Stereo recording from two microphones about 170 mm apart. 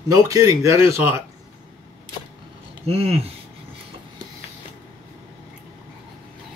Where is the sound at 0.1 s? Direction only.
20° right (ahead or behind).